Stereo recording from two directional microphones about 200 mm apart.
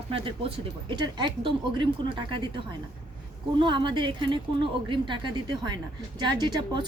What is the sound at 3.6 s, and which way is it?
A woman's voice, 25° right (ahead or behind).